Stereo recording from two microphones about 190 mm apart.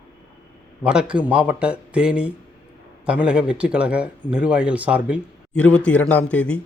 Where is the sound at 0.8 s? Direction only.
5° right (ahead or behind).